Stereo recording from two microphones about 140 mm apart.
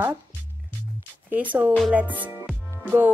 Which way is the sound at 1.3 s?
15° right (ahead or behind).